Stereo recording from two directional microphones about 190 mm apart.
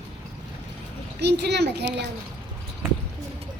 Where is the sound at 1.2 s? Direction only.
60° right (ahead or behind).